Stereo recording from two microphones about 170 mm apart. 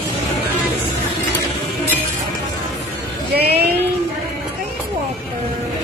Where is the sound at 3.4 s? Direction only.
70° right (ahead or behind).